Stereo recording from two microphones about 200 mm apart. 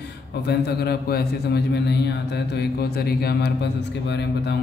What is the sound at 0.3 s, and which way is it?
A man's voice, 55° left (ahead or behind).